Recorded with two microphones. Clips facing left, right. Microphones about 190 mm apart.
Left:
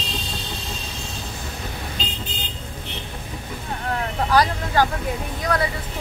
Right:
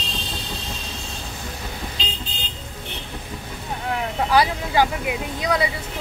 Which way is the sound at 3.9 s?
10° right (ahead or behind).